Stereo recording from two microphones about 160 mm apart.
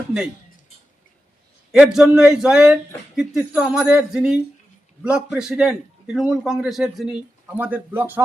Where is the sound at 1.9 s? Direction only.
5° right (ahead or behind).